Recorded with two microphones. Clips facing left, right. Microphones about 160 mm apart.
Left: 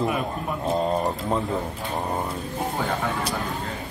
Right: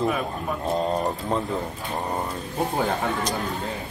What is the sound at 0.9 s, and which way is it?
Speech, centre (ahead or behind).